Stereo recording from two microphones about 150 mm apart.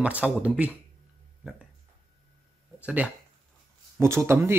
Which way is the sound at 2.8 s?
10° right (ahead or behind).